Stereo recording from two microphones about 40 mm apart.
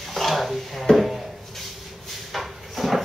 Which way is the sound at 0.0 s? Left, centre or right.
Centre.